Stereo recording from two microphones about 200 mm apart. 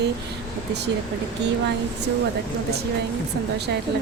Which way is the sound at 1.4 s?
60° right (ahead or behind).